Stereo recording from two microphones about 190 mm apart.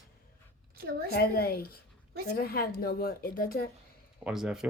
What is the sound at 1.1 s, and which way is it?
A woman's voice, 55° left (ahead or behind).